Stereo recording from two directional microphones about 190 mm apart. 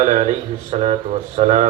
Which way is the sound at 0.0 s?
35° right (ahead or behind).